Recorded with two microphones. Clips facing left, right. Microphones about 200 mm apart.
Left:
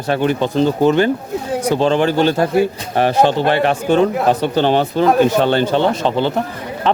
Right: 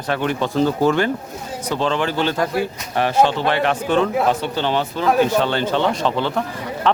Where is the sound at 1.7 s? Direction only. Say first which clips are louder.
Left 5 dB; 50° left (ahead or behind).